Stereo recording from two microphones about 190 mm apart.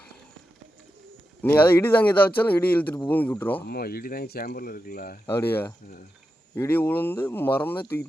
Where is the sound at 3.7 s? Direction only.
55° left (ahead or behind).